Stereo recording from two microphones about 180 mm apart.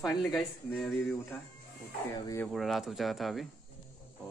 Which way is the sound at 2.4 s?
Centre (ahead or behind).